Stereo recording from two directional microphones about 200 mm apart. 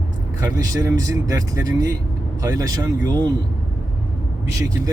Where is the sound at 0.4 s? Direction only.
15° right (ahead or behind).